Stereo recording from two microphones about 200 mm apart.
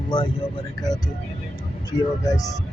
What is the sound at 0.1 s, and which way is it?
Speech, 25° left (ahead or behind).